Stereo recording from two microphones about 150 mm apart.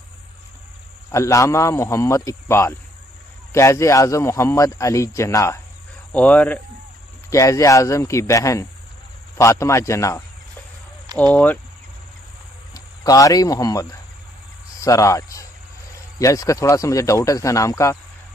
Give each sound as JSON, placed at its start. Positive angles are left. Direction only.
{"t": 1.1, "sound": "speech", "side_deg": 20}
{"t": 7.2, "sound": "speech", "side_deg": 20}
{"t": 11.1, "sound": "speech", "side_deg": -25}
{"t": 12.7, "sound": "speech", "side_deg": 25}